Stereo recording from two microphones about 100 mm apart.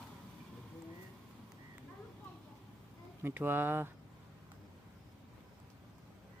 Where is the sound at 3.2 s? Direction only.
20° right (ahead or behind).